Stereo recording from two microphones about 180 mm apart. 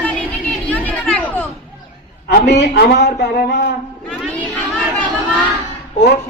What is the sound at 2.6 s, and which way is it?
Speech, 65° left (ahead or behind).